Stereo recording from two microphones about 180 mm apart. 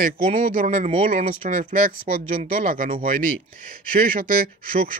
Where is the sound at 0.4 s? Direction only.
45° right (ahead or behind).